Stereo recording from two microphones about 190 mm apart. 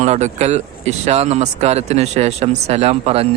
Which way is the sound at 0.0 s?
35° right (ahead or behind).